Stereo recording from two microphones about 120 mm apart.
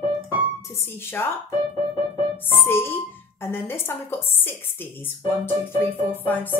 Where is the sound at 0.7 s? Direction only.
20° left (ahead or behind).